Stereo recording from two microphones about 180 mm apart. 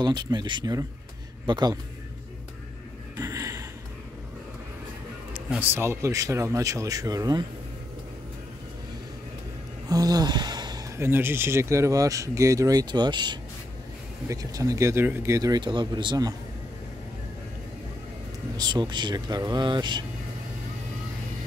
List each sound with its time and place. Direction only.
0.0 s speech: 25° right (ahead or behind)
3.2 s a sound: 15° right (ahead or behind)
5.5 s speech: 10° right (ahead or behind)
9.8 s speech: 20° right (ahead or behind)
18.6 s speech: 25° right (ahead or behind)